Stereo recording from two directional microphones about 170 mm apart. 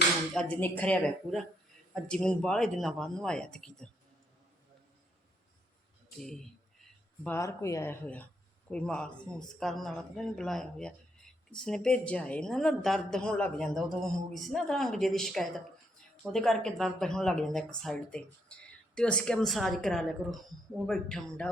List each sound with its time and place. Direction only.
0.3 s speech: 10° left (ahead or behind)
7.3 s speech: 15° left (ahead or behind)